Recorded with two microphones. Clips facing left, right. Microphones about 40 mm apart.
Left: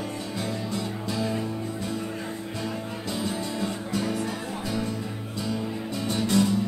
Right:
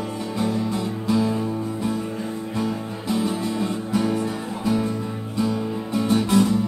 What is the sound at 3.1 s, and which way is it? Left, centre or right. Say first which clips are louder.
Music: right 7 dB; centre.